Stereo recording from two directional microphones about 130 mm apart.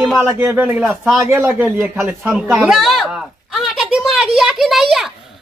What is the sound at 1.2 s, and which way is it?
Speech, 15° right (ahead or behind).